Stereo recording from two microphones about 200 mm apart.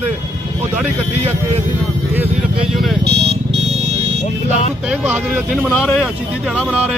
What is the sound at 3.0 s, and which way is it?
Speech, 55° right (ahead or behind).